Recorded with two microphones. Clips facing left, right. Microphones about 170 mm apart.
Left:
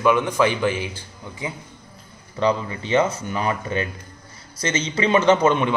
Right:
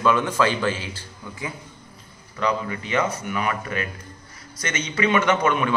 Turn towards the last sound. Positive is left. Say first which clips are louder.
# left 4 dB
turn(degrees=25)  # may be behind; listen again after turning